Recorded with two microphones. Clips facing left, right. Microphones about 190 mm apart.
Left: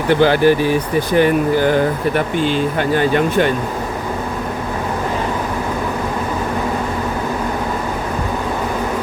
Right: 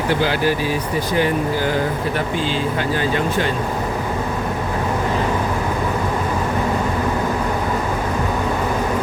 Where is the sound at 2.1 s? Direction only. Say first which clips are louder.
Left 4 dB; 60° left (ahead or behind).